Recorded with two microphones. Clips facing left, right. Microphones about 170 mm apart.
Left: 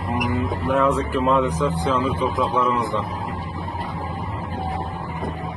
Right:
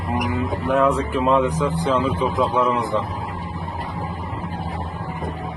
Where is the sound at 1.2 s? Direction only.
15° right (ahead or behind).